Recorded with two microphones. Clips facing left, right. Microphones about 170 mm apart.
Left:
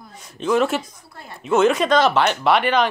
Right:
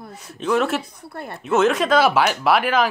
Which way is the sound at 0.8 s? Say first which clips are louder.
Right 8 dB; 60° right (ahead or behind).